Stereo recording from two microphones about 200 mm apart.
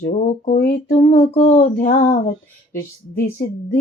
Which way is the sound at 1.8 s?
45° left (ahead or behind).